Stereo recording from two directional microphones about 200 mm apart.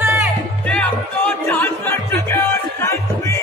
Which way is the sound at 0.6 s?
5° left (ahead or behind).